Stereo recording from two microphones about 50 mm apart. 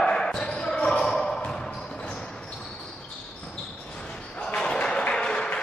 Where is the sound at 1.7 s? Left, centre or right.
Centre.